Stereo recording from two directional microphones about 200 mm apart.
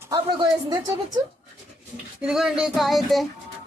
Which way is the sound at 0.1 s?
20° right (ahead or behind).